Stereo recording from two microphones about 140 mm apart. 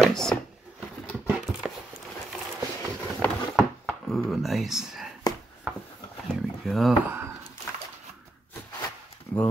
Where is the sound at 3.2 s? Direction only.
5° left (ahead or behind).